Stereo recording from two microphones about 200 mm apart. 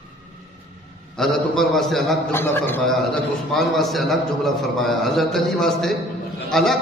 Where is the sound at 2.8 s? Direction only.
Centre (ahead or behind).